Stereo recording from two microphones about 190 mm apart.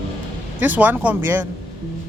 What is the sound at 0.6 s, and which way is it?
Speech, 10° right (ahead or behind).